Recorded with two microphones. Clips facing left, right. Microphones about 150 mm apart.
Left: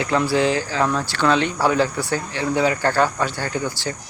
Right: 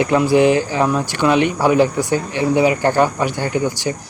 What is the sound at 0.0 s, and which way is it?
Speech, 15° right (ahead or behind).